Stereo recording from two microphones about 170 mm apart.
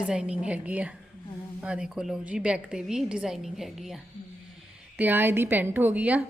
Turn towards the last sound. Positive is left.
turn(degrees=-10)  # may be behind; listen again after turning